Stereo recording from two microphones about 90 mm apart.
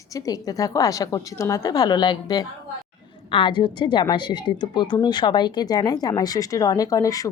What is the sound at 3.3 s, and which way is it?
A woman's voice, 65° left (ahead or behind).